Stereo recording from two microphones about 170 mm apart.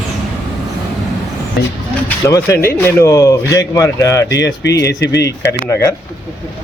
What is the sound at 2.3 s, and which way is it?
A man's voice, 15° left (ahead or behind).